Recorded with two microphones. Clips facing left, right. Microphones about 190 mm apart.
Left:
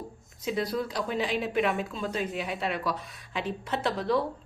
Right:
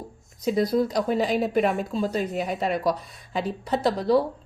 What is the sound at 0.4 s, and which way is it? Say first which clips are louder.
Speech: right 7 dB; 40° right (ahead or behind).